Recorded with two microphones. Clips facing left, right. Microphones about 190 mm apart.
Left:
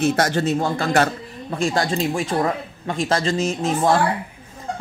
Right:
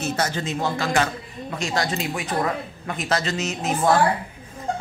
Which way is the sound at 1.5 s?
30° left (ahead or behind).